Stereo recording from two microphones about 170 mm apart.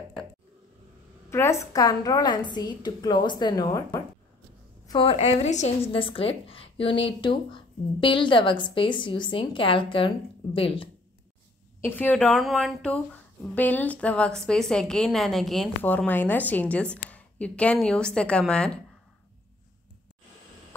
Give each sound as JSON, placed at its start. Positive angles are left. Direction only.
{"t": 1.3, "sound": "a woman's voice", "side_deg": 15}
{"t": 4.8, "sound": "a woman's voice", "side_deg": 30}
{"t": 11.8, "sound": "a woman's voice", "side_deg": 10}